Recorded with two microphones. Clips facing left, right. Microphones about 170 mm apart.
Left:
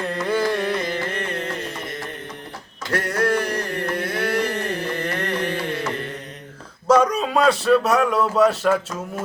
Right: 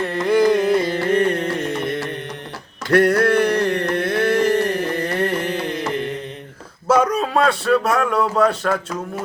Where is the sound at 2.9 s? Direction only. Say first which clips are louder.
Right 7 dB; 60° right (ahead or behind).